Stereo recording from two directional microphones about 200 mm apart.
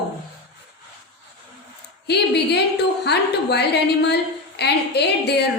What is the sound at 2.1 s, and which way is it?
A woman's voice, 55° left (ahead or behind).